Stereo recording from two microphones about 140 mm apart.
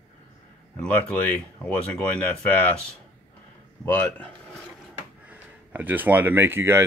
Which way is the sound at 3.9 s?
15° left (ahead or behind).